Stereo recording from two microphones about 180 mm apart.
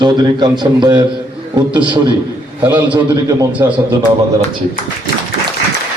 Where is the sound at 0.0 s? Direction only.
25° right (ahead or behind).